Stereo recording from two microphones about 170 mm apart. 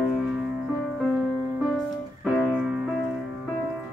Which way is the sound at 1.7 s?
Centre (ahead or behind).